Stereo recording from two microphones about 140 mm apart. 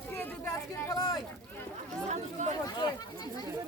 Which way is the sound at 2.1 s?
55° right (ahead or behind).